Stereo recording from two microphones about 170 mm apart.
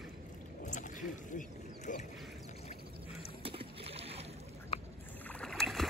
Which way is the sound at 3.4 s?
35° right (ahead or behind).